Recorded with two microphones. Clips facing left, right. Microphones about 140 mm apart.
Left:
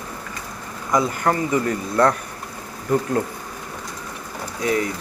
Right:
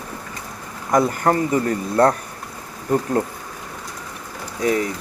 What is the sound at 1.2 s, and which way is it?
Speech, 35° right (ahead or behind).